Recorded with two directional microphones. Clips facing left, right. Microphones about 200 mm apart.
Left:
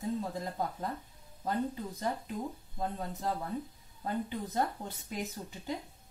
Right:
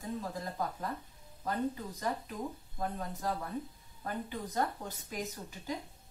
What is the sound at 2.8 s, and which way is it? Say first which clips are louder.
Speech: left 1 dB; 25° left (ahead or behind).